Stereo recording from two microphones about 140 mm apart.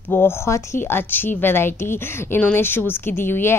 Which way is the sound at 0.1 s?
15° left (ahead or behind).